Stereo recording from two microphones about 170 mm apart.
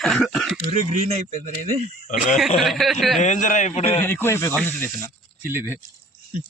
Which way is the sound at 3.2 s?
45° left (ahead or behind).